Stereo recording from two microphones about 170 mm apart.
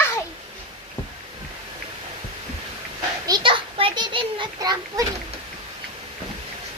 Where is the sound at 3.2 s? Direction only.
25° right (ahead or behind).